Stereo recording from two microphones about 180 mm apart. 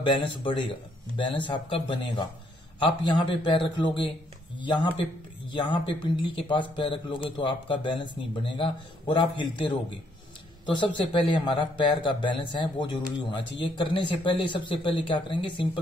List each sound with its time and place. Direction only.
0.0 s a man's voice: 25° left (ahead or behind)
5.5 s a man's voice: 30° left (ahead or behind)
11.1 s a man's voice: 25° left (ahead or behind)